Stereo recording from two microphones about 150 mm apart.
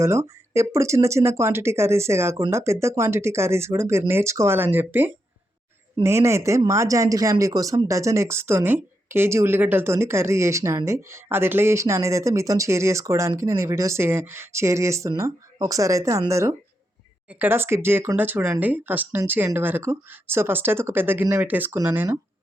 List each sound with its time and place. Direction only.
0.0 s speech: 20° right (ahead or behind)